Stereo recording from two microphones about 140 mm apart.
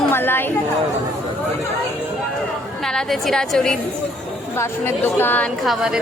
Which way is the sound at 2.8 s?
5° left (ahead or behind).